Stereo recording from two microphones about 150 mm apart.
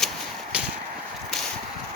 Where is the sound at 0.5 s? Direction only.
10° right (ahead or behind).